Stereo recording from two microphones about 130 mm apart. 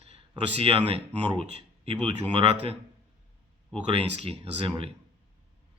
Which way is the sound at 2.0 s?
45° right (ahead or behind).